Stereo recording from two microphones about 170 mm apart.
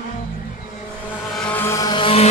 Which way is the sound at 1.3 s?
10° left (ahead or behind).